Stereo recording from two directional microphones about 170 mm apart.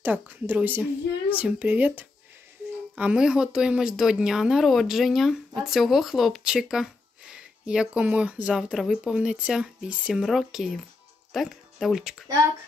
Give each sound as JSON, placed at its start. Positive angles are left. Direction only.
{"t": 0.0, "sound": "a woman's voice", "side_deg": -10}